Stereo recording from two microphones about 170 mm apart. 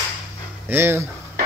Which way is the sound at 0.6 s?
15° right (ahead or behind).